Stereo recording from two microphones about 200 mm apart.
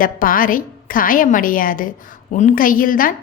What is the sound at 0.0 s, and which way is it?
A woman's voice, 45° left (ahead or behind).